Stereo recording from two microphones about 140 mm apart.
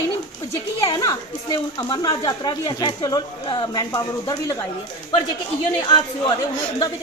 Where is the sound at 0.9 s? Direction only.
25° left (ahead or behind).